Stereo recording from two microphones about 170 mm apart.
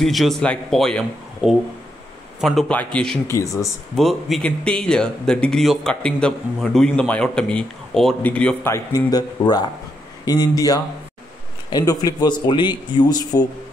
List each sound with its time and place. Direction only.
0.0 s speech: centre (ahead or behind); by 13.5 s 25° left (ahead or behind)